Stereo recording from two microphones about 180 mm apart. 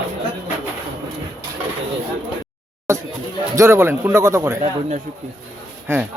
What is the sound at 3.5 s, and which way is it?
Speech, 15° right (ahead or behind).